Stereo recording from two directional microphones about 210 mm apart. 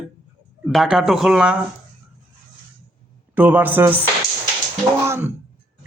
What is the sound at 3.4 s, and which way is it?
Speech, 10° right (ahead or behind).